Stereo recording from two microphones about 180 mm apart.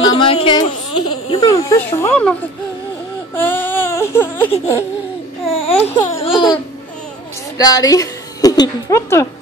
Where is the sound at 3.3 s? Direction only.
10° left (ahead or behind).